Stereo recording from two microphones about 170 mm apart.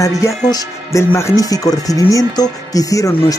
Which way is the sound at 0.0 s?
20° left (ahead or behind).